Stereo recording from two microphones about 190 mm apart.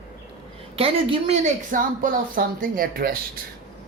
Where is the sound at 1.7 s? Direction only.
45° right (ahead or behind).